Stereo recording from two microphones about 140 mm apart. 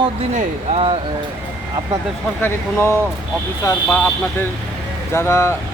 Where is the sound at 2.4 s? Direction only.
15° left (ahead or behind).